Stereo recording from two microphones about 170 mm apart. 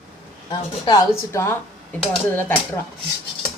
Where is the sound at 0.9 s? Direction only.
20° left (ahead or behind).